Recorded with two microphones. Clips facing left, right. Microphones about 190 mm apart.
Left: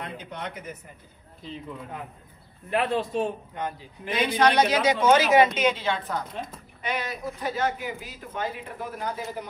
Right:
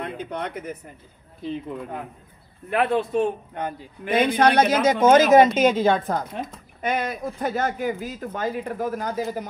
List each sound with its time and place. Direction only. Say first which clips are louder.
0.0 s speech: right 6 dB; 55° right (ahead or behind)
2.7 s a man's voice: right 4 dB; 55° right (ahead or behind)